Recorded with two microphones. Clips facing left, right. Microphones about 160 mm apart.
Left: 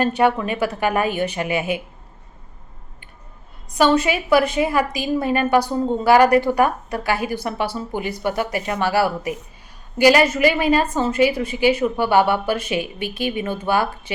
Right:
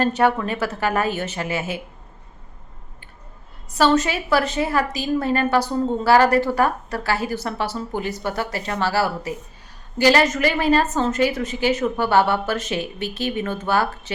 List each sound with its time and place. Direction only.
0.0 s a woman's voice: 15° left (ahead or behind)
3.8 s a woman's voice: 15° left (ahead or behind)